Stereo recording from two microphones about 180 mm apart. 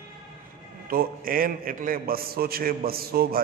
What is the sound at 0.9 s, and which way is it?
A man's voice, 55° right (ahead or behind).